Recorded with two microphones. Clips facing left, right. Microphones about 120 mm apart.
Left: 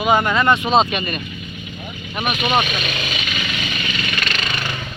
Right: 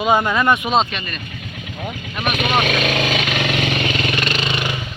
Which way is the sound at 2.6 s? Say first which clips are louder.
Right 7 dB; 60° right (ahead or behind).